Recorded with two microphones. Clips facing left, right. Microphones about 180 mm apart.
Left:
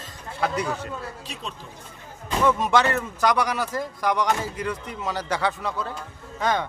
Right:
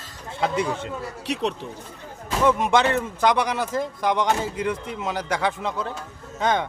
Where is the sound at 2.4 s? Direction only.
20° right (ahead or behind).